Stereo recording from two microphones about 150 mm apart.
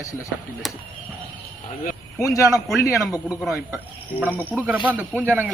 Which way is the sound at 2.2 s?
20° left (ahead or behind).